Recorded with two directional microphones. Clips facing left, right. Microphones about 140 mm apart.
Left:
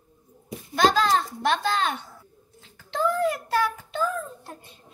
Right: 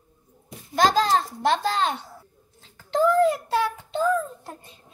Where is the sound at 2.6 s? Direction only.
45° right (ahead or behind).